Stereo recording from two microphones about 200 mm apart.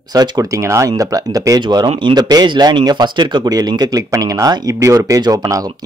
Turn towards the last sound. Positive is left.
turn(degrees=-15)  # may be behind; listen again after turning